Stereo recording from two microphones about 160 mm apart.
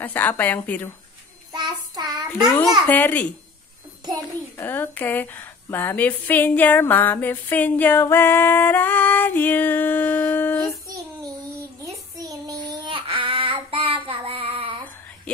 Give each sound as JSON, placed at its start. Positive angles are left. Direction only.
{"t": 0.0, "sound": "a woman's voice", "side_deg": 10}
{"t": 1.5, "sound": "child singing", "side_deg": -25}
{"t": 2.9, "sound": "a woman's voice", "side_deg": 10}
{"t": 4.6, "sound": "a woman's voice", "side_deg": 10}
{"t": 11.8, "sound": "child singing", "side_deg": -20}
{"t": 15.3, "sound": "speech", "side_deg": 5}